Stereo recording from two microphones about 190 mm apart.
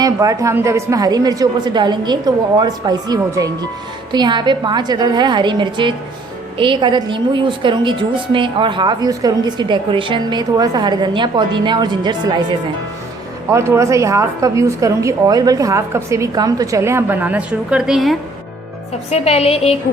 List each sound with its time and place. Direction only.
0.0 s a woman's voice: 15° right (ahead or behind); by 18.2 s centre (ahead or behind)
19.1 s a woman's voice: 30° left (ahead or behind)